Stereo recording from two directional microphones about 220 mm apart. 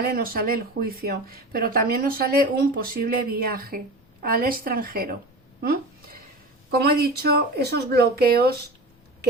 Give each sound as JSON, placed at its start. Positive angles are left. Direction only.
{"t": 0.0, "sound": "a woman's voice", "side_deg": -40}
{"t": 5.6, "sound": "a sound", "side_deg": -45}
{"t": 6.7, "sound": "speech", "side_deg": -45}